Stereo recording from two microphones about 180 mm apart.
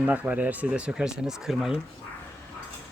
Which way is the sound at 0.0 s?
10° right (ahead or behind).